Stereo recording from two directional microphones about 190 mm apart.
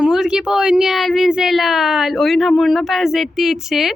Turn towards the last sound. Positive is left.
turn(degrees=0)  # may be behind; listen again after turning